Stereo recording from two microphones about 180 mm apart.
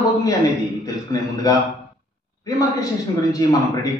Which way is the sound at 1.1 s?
20° left (ahead or behind).